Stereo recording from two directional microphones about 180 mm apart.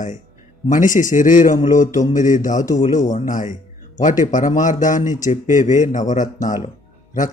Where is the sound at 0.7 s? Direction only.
45° left (ahead or behind).